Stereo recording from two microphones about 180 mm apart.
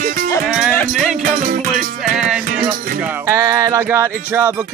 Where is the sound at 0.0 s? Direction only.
50° right (ahead or behind).